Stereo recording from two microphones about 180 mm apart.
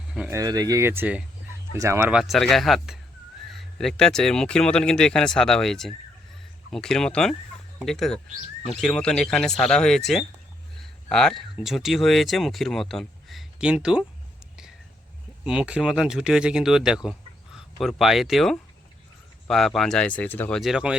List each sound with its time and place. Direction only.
0.3 s speech: 20° right (ahead or behind)
15.4 s speech: 5° right (ahead or behind); by 20.6 s 10° left (ahead or behind)
20.6 s speech: 5° right (ahead or behind)